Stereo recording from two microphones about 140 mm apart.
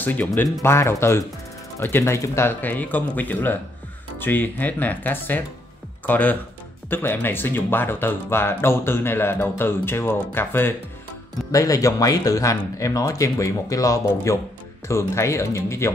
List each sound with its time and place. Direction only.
0.0 s speech: 10° left (ahead or behind)
0.4 s speech: 20° left (ahead or behind)